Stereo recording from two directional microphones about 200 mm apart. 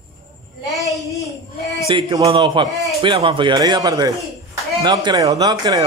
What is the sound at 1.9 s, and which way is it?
Speech, 25° right (ahead or behind).